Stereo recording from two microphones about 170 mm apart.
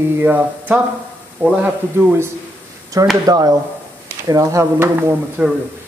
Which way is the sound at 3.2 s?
20° right (ahead or behind).